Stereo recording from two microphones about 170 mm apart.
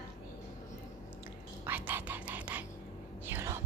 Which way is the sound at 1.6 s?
10° right (ahead or behind).